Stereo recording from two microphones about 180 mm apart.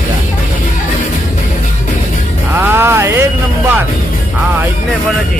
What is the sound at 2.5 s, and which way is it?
Music, 15° right (ahead or behind).